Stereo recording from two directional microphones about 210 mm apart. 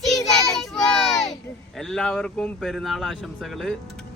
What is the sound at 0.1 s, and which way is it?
Child singing, centre (ahead or behind).